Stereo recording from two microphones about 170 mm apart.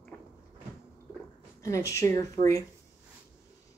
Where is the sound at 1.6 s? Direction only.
15° left (ahead or behind).